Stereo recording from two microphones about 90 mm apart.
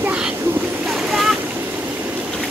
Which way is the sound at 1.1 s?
5° right (ahead or behind).